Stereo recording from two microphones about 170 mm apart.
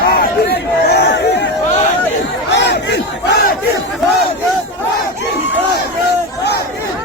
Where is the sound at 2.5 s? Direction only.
90° left.